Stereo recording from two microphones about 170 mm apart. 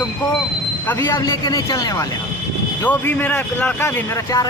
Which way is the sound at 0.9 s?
15° left (ahead or behind).